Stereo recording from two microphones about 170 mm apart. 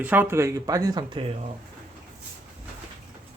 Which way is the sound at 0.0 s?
10° right (ahead or behind).